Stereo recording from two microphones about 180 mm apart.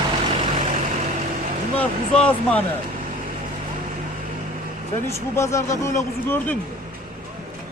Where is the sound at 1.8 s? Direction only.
10° left (ahead or behind).